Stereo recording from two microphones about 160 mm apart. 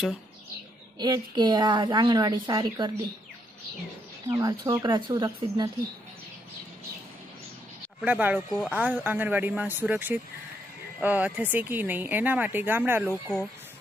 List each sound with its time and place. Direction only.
0.9 s a woman's voice: 25° right (ahead or behind)
4.3 s a woman's voice: 25° right (ahead or behind)
8.0 s speech: 10° right (ahead or behind)